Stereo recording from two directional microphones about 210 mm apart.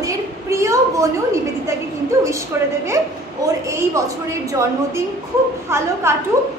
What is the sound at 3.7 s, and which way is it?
Speech, 15° right (ahead or behind).